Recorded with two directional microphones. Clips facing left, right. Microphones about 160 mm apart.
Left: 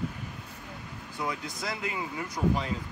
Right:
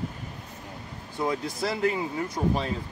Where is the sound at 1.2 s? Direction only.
30° right (ahead or behind).